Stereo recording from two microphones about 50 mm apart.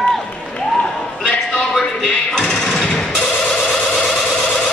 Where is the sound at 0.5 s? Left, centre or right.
Centre.